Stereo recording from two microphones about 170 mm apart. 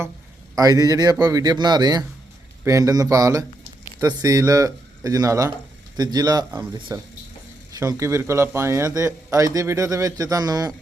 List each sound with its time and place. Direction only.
0.5 s a man's voice: 20° right (ahead or behind)